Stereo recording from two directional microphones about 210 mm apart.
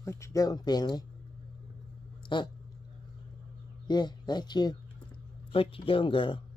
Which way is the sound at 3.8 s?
20° left (ahead or behind).